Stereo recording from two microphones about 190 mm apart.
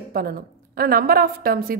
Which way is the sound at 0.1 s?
50° right (ahead or behind).